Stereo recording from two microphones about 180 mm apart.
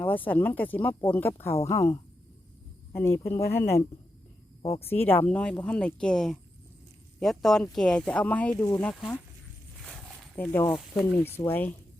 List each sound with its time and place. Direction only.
0.0 s a woman's voice: 10° left (ahead or behind)
4.9 s speech: 10° left (ahead or behind)
9.8 s a sound: centre (ahead or behind)
10.3 s a woman's voice: 10° left (ahead or behind)